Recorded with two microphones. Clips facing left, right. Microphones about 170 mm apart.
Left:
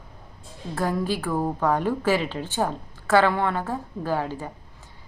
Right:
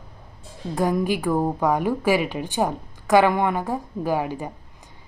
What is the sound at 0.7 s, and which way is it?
A woman's voice, 15° right (ahead or behind).